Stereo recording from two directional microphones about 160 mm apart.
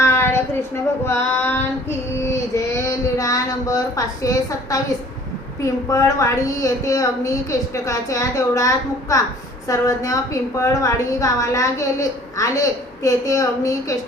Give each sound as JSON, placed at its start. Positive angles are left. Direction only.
{"t": 0.0, "sound": "a sound", "side_deg": 15}
{"t": 1.0, "sound": "female singing", "side_deg": 15}
{"t": 2.1, "sound": "child singing", "side_deg": 15}
{"t": 5.9, "sound": "a woman's voice", "side_deg": 20}